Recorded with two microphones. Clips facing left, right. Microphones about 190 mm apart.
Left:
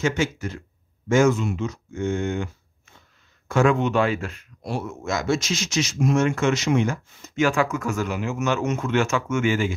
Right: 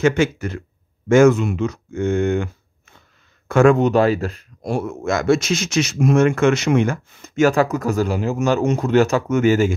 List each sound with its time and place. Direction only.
0.0 s speech: 60° right (ahead or behind)
3.4 s a sound: 55° right (ahead or behind)
3.7 s speech: 40° right (ahead or behind)
4.6 s speech: 55° right (ahead or behind)